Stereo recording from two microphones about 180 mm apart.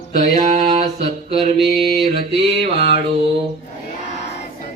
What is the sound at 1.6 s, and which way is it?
Mantra, centre (ahead or behind).